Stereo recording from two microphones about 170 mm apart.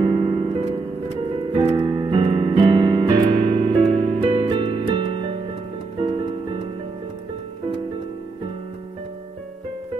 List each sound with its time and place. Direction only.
0.0 s music: 30° right (ahead or behind)
1.2 s piano: 30° right (ahead or behind)
3.3 s music: 35° right (ahead or behind)